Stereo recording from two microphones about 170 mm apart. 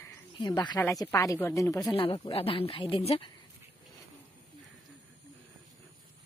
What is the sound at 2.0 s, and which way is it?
Speech, 30° left (ahead or behind).